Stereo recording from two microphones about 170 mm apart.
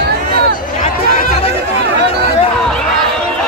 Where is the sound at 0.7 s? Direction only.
50° left (ahead or behind).